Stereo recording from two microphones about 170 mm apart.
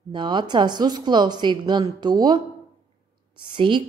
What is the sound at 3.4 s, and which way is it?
Speech, 30° right (ahead or behind).